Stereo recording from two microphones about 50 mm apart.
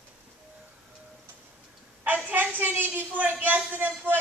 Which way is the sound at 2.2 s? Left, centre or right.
Right.